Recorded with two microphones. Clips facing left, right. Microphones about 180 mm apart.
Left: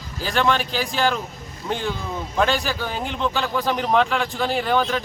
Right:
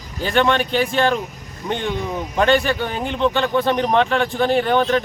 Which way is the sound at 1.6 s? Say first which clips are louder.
Right 2 dB; 15° right (ahead or behind).